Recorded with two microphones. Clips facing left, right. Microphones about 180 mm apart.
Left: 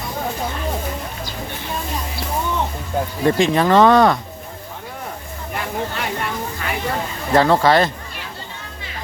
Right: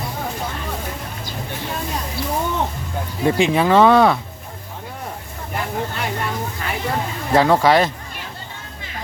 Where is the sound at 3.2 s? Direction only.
10° right (ahead or behind).